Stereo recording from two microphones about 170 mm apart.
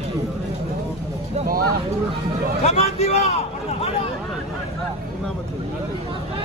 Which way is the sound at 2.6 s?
40° left (ahead or behind).